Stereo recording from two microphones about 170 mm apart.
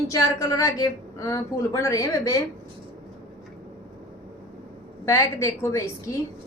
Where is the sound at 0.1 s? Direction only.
20° left (ahead or behind).